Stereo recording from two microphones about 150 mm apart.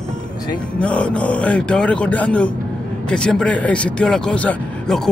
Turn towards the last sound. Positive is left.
turn(degrees=5)  # may be behind; listen again after turning